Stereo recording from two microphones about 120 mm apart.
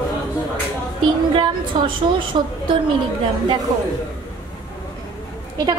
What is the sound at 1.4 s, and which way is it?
A woman's voice, 45° right (ahead or behind).